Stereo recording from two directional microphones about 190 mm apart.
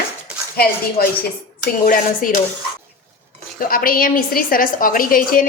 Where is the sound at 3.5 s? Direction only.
50° left (ahead or behind).